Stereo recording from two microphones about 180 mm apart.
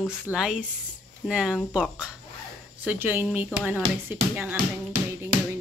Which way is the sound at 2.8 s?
10° right (ahead or behind).